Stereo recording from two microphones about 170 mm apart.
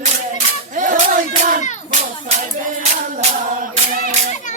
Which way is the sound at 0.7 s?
50° right (ahead or behind).